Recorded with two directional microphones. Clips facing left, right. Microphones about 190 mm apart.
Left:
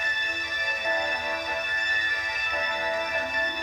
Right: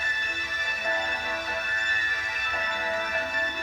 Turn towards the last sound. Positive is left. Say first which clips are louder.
# left 1 dB
turn(degrees=15)  # may be behind; listen again after turning